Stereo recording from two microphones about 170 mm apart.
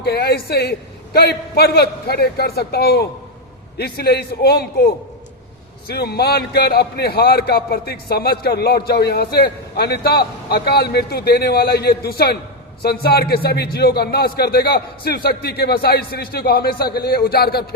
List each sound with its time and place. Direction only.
0.0 s a man's voice: 70° left (ahead or behind)
5.9 s a man's voice: 70° left (ahead or behind)